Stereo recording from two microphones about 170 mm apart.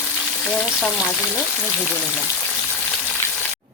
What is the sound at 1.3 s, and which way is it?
Speech, 10° left (ahead or behind).